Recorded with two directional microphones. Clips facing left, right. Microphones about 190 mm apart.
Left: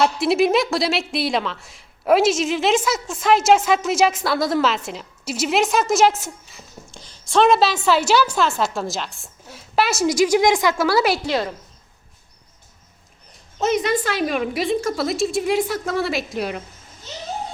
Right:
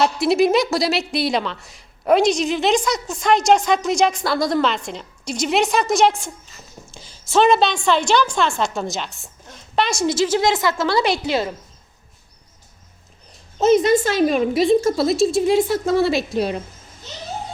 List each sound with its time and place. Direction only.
0.0 s a woman's voice: centre (ahead or behind)
6.9 s a sound: 5° right (ahead or behind)
7.9 s a woman's voice: 5° left (ahead or behind)
11.2 s a woman's voice: 25° right (ahead or behind)
13.6 s a woman's voice: 30° right (ahead or behind)